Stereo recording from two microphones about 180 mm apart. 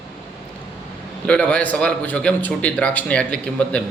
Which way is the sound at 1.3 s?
5° left (ahead or behind).